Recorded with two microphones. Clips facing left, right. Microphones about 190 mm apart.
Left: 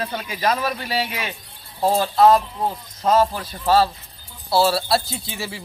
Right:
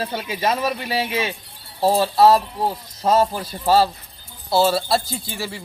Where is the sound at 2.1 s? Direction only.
30° right (ahead or behind).